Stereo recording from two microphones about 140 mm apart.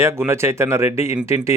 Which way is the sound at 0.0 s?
20° right (ahead or behind).